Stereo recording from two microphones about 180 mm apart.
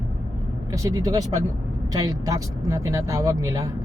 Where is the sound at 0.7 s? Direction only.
20° right (ahead or behind).